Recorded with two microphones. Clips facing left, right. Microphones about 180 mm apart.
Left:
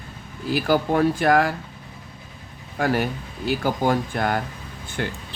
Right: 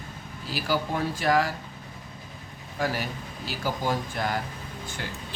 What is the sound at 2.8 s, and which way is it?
Speech, 60° left (ahead or behind).